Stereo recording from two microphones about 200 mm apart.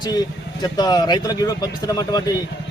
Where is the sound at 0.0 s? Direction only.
20° left (ahead or behind).